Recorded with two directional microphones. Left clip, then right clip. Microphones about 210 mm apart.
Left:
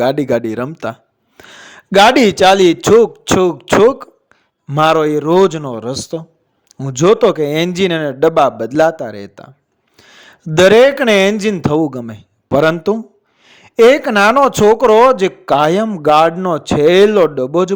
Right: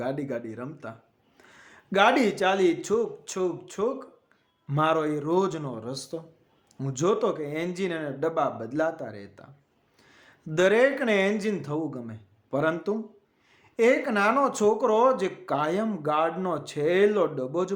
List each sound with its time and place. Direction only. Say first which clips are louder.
0.0 s a man's voice: left 17 dB; 45° left (ahead or behind)